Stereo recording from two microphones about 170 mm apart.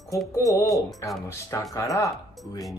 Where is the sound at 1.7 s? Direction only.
20° left (ahead or behind).